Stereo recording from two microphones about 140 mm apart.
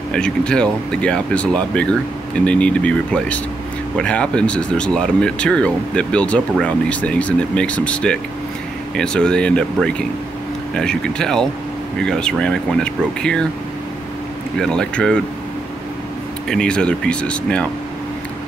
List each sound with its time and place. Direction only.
0.1 s speech: 5° left (ahead or behind)
14.6 s speech: 5° left (ahead or behind)
16.4 s speech: 5° left (ahead or behind)